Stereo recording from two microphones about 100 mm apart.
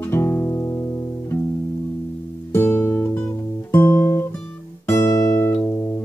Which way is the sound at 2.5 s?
20° left (ahead or behind).